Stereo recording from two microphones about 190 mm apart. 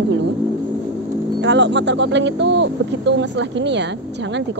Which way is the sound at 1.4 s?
70° right (ahead or behind).